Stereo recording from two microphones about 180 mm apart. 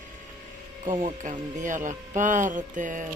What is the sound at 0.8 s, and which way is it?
Speech, 25° right (ahead or behind).